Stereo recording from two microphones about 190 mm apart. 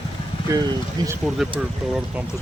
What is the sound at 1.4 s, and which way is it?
Speech, centre (ahead or behind).